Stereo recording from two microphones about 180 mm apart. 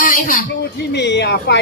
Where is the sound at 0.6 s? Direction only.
70° left (ahead or behind).